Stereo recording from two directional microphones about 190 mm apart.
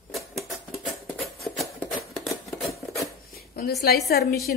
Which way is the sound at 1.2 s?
Centre (ahead or behind).